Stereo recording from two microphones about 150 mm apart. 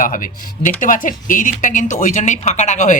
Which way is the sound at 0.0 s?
65° left (ahead or behind).